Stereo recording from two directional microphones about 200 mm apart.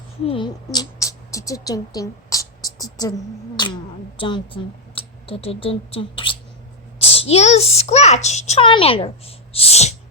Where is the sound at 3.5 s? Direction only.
20° left (ahead or behind).